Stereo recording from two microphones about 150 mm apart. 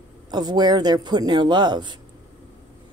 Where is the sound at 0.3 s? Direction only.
30° right (ahead or behind).